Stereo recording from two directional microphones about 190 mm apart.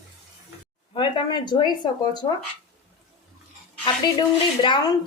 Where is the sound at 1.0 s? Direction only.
25° left (ahead or behind).